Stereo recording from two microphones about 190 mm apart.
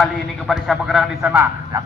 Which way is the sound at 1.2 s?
10° right (ahead or behind).